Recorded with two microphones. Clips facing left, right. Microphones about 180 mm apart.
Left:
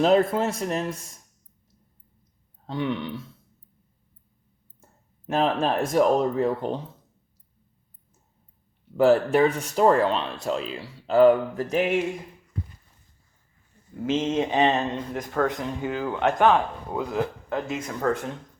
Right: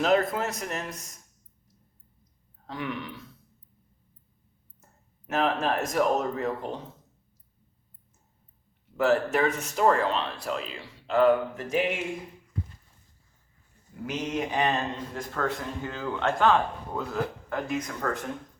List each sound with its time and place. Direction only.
0.0 s speech: 30° left (ahead or behind)
2.6 s speech: 25° left (ahead or behind)
4.8 s speech: 30° left (ahead or behind)
9.0 s speech: 30° left (ahead or behind)
10.7 s speech: 35° left (ahead or behind)
14.0 s speech: 25° left (ahead or behind)